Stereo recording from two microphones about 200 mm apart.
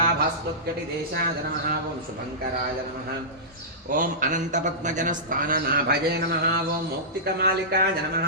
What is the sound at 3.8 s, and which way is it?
A man's voice, 40° right (ahead or behind).